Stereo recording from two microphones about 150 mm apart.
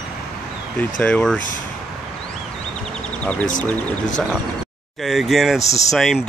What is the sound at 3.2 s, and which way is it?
Speech, 10° left (ahead or behind).